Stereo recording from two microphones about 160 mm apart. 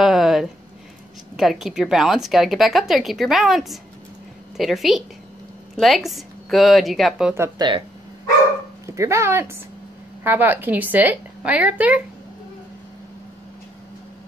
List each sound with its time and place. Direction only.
0.0 s a sound: centre (ahead or behind)
1.3 s speech: centre (ahead or behind)
7.3 s a woman's voice: 15° right (ahead or behind)
8.8 s a woman's voice: 20° right (ahead or behind)